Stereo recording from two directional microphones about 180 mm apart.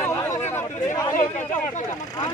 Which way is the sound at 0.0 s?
15° left (ahead or behind).